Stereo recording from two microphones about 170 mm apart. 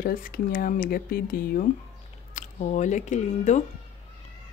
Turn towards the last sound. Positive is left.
turn(degrees=45)  # may be behind; listen again after turning